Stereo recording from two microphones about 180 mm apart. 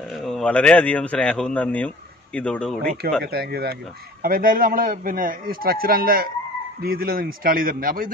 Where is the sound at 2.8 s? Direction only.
60° right (ahead or behind).